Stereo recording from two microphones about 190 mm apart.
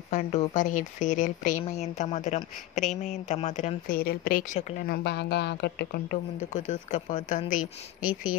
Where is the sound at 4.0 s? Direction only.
50° left (ahead or behind).